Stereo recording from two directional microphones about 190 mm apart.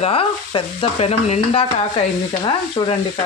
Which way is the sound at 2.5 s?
25° left (ahead or behind).